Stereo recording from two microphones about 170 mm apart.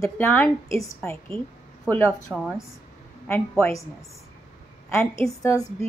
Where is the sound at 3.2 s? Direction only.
10° left (ahead or behind).